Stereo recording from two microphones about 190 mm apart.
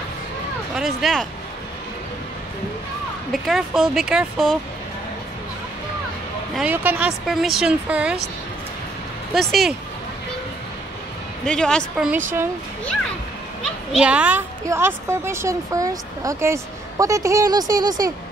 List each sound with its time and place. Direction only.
0.7 s speech: centre (ahead or behind)
3.3 s speech: centre (ahead or behind)
6.5 s speech: 10° right (ahead or behind)
9.3 s speech: centre (ahead or behind)
11.4 s speech: 5° left (ahead or behind)
13.9 s a woman's voice: 5° right (ahead or behind)